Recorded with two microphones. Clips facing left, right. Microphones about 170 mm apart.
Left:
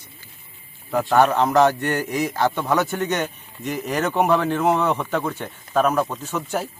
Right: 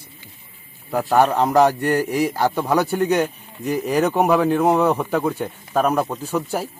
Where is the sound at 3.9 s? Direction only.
10° right (ahead or behind).